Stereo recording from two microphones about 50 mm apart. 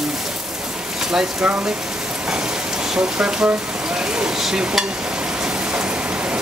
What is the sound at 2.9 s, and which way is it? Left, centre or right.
Speech, centre.